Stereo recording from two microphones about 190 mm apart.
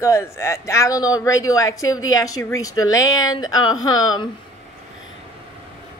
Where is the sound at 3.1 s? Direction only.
90° left.